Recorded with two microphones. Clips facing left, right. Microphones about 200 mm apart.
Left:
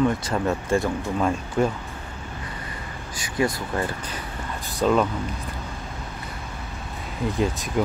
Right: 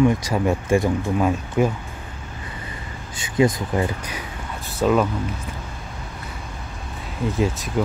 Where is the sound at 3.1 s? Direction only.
25° right (ahead or behind); by 5.1 s 5° right (ahead or behind).